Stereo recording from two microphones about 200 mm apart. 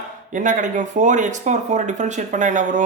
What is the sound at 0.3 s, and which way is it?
Speech, 40° right (ahead or behind).